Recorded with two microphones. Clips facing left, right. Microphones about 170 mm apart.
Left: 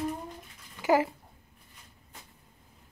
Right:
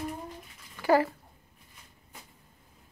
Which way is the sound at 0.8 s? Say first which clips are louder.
Right 1 dB; 15° left (ahead or behind).